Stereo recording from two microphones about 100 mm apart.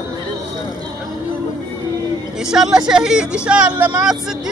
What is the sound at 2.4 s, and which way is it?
Speech, 5° right (ahead or behind).